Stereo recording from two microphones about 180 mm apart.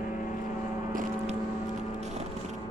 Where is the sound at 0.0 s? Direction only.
45° left (ahead or behind).